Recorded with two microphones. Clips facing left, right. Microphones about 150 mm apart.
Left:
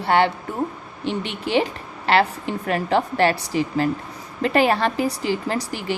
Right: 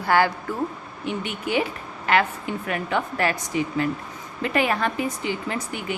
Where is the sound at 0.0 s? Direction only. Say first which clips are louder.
Left 2 dB; 25° left (ahead or behind).